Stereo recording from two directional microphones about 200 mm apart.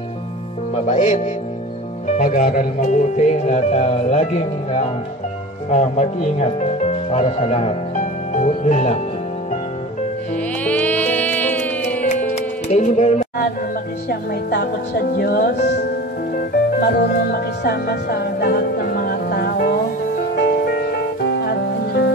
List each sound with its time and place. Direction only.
0.7 s music: 35° left (ahead or behind)
5.7 s speech: 35° left (ahead or behind)
10.6 s music: 5° left (ahead or behind)
12.6 s music: 35° left (ahead or behind)
14.0 s speech: 55° left (ahead or behind)
16.3 s music: 50° left (ahead or behind)